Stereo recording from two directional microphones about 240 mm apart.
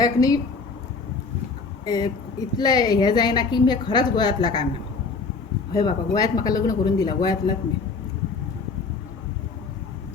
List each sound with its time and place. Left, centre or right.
0.0 s a woman's voice: centre
1.8 s a woman's voice: centre
5.7 s a woman's voice: centre